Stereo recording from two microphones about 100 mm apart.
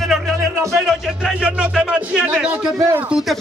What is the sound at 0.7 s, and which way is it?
Music, centre (ahead or behind).